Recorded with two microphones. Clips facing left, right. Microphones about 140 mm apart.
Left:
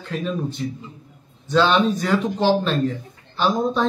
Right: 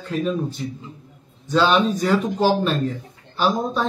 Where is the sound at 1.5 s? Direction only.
10° right (ahead or behind).